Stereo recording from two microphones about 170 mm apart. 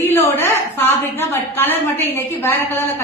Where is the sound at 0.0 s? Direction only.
15° left (ahead or behind).